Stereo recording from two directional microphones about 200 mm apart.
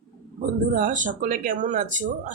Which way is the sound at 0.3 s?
40° right (ahead or behind).